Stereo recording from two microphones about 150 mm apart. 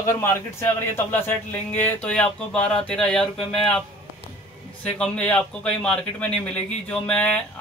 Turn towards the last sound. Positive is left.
turn(degrees=10)  # may be behind; listen again after turning